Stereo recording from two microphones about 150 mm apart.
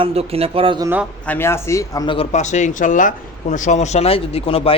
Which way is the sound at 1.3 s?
15° left (ahead or behind).